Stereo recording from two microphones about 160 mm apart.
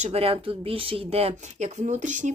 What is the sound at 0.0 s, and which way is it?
Speech, 40° right (ahead or behind).